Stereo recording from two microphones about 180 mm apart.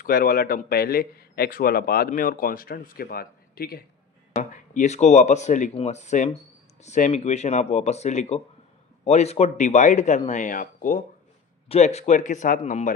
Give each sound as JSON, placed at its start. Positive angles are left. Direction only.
{"t": 0.0, "sound": "a man's voice", "side_deg": 55}
{"t": 4.3, "sound": "speech", "side_deg": 45}
{"t": 11.7, "sound": "speech", "side_deg": 35}